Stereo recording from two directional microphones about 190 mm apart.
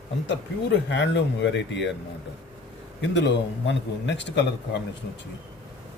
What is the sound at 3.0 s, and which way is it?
A man's voice, 70° left (ahead or behind).